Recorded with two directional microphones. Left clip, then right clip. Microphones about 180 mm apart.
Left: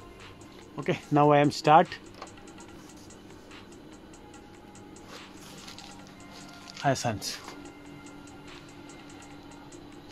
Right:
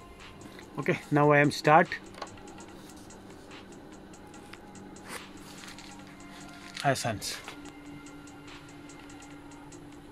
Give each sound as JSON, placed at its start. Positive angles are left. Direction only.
{"t": 0.7, "sound": "speech", "side_deg": 10}
{"t": 6.9, "sound": "speech", "side_deg": 25}